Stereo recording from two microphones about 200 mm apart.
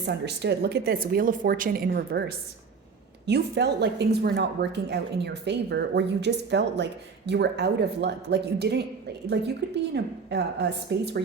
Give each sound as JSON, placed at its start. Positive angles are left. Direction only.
{"t": 0.0, "sound": "a woman's voice", "side_deg": -60}
{"t": 9.9, "sound": "a woman's voice", "side_deg": -60}